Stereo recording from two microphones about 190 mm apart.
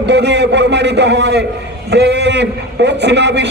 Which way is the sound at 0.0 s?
65° right (ahead or behind).